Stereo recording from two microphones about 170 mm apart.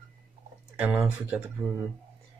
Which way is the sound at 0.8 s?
10° right (ahead or behind).